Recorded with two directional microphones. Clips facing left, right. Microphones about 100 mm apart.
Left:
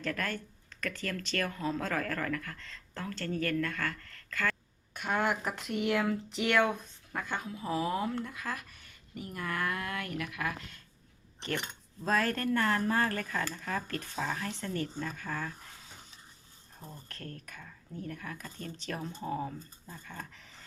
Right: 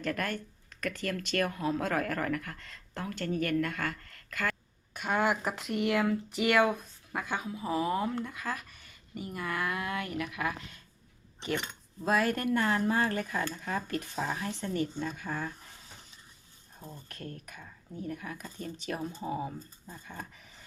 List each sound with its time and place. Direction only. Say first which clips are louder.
0.0 s speech: right 2 dB; 10° right (ahead or behind)
4.1 s a sound: even; 15° right (ahead or behind)
4.9 s speech: right 2 dB; 5° right (ahead or behind)
17.1 s speech: right 2 dB; 15° right (ahead or behind)